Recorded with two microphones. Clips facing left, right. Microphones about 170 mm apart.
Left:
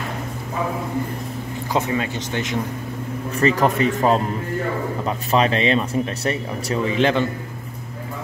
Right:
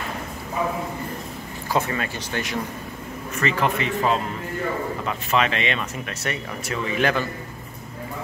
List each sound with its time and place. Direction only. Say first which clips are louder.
1.7 s speech: left 2 dB; 20° left (ahead or behind)
3.3 s speech: left 5 dB; 40° left (ahead or behind)